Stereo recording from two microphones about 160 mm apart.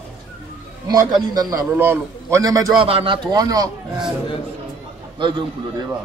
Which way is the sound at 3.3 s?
25° right (ahead or behind).